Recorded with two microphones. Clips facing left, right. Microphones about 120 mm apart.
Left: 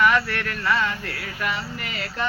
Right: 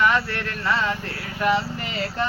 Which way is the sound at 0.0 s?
30° right (ahead or behind).